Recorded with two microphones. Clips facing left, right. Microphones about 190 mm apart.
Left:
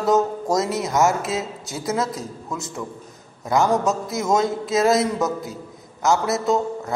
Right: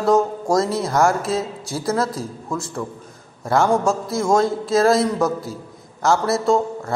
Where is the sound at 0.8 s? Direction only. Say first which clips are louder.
Right 1 dB; 20° left (ahead or behind).